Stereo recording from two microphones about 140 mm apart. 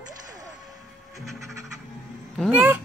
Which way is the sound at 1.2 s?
Centre (ahead or behind).